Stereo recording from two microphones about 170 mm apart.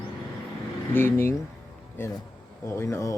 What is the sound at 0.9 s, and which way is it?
Speech, 15° left (ahead or behind).